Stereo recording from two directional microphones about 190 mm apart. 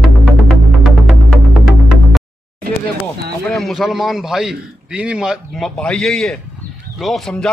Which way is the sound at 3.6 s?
Centre (ahead or behind).